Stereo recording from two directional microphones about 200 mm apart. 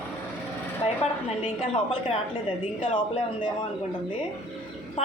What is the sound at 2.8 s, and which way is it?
Speech, 25° left (ahead or behind).